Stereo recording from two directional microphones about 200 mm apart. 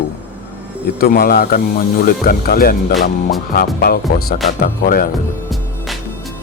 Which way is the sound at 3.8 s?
50° left (ahead or behind).